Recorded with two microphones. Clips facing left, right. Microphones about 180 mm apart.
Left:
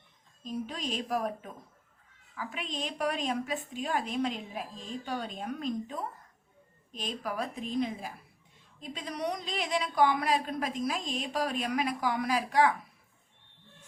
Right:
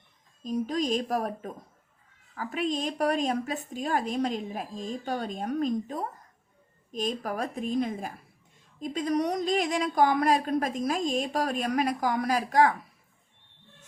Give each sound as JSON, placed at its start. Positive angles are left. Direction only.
{"t": 0.4, "sound": "speech", "side_deg": -40}